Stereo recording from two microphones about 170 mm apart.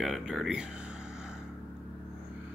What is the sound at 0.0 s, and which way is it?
Speech, centre (ahead or behind).